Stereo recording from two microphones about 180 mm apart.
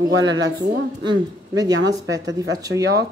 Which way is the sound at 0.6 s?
25° right (ahead or behind).